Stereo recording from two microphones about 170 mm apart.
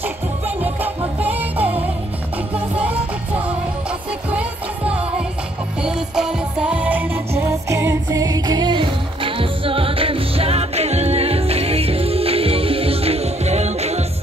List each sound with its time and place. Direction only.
0.7 s music: 10° right (ahead or behind)
4.3 s music: 10° right (ahead or behind); by 14.0 s 40° right (ahead or behind)